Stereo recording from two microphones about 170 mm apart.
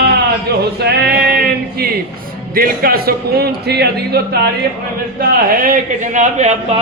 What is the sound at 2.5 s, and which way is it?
A man's voice, 60° right (ahead or behind).